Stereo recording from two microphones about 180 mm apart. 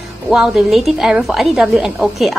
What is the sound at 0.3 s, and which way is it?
A woman's voice, centre (ahead or behind).